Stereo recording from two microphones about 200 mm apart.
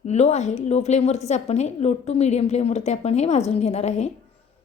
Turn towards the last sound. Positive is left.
turn(degrees=35)  # may be behind; listen again after turning